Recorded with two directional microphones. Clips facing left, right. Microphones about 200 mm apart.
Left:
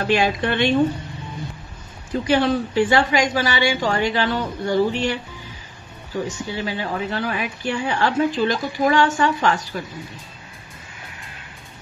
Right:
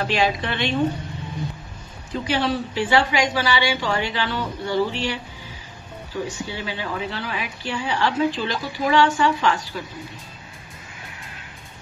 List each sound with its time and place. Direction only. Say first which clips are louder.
0.1 s speech: left 6 dB; 50° left (ahead or behind)
2.2 s speech: left 5 dB; 50° left (ahead or behind)
6.2 s speech: left 3 dB; 45° left (ahead or behind)